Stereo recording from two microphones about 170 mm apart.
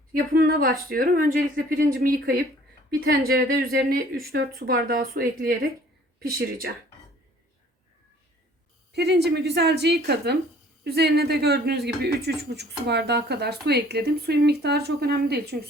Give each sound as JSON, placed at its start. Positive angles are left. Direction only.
{"t": 0.1, "sound": "speech", "side_deg": -65}
{"t": 8.9, "sound": "speech", "side_deg": -75}